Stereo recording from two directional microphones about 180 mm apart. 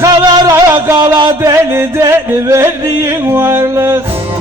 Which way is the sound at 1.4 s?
15° right (ahead or behind).